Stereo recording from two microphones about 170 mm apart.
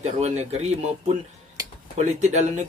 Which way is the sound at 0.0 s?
40° right (ahead or behind).